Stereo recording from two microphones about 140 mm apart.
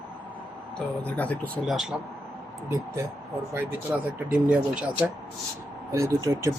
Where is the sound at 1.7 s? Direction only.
Centre (ahead or behind).